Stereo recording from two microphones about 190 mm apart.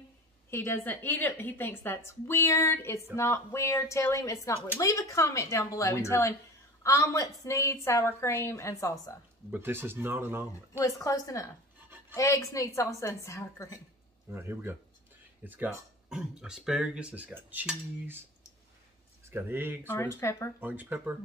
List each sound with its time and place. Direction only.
0.5 s a woman's voice: 15° left (ahead or behind)
9.5 s speech: 10° right (ahead or behind)
10.8 s a woman's voice: 15° left (ahead or behind)
14.3 s speech: 10° right (ahead or behind)
19.2 s speech: 10° right (ahead or behind)
19.9 s a woman's voice: 15° left (ahead or behind)
20.6 s speech: 10° right (ahead or behind)